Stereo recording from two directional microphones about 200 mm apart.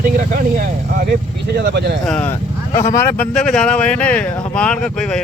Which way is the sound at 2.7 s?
35° left (ahead or behind).